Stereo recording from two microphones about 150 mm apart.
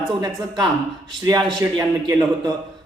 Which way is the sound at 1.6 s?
20° right (ahead or behind).